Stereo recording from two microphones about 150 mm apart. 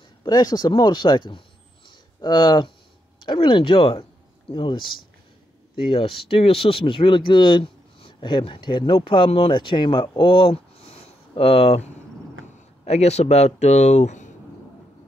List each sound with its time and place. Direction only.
0.2 s speech: 25° left (ahead or behind)
1.9 s a sound: 30° left (ahead or behind)
3.3 s speech: 35° left (ahead or behind); by 14.3 s 55° left (ahead or behind)